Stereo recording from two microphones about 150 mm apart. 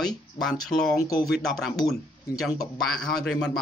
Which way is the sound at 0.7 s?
45° left (ahead or behind).